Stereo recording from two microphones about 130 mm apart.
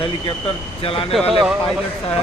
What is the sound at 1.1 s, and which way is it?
Speech, centre (ahead or behind).